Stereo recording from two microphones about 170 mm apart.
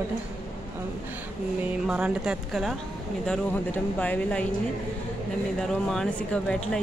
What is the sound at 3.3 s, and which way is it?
Speech, 10° left (ahead or behind).